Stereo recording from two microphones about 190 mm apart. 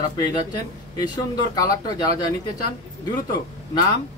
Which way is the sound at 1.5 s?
20° left (ahead or behind).